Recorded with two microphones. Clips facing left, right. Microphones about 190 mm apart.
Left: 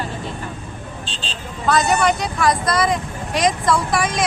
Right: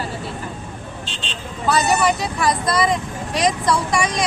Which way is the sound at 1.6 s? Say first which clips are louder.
Left 1 dB; centre (ahead or behind).